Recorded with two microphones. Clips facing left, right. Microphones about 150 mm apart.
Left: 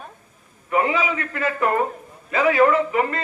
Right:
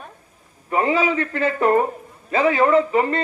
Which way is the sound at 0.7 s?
30° right (ahead or behind).